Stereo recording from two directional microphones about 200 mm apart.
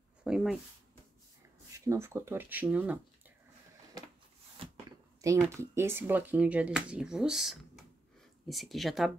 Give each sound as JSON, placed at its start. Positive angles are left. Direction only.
{"t": 0.2, "sound": "speech", "side_deg": -5}
{"t": 1.9, "sound": "speech", "side_deg": -15}
{"t": 4.6, "sound": "a sound", "side_deg": -25}
{"t": 5.2, "sound": "speech", "side_deg": -15}